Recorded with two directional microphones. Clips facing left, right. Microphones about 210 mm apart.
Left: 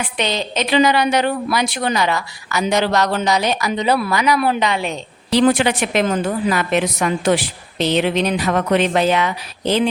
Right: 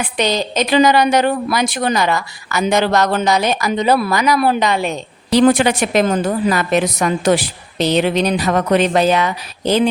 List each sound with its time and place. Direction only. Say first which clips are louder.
0.2 s a woman's voice: right 4 dB; 40° right (ahead or behind)